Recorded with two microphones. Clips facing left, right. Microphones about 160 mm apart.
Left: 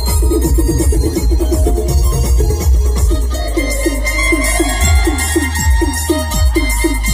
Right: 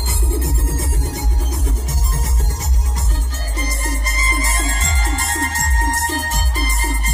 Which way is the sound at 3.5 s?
90° left.